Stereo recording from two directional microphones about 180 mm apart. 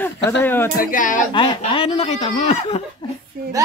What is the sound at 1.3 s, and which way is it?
Speech, 30° left (ahead or behind).